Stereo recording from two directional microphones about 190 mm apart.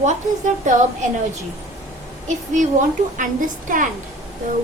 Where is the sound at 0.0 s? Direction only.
40° right (ahead or behind).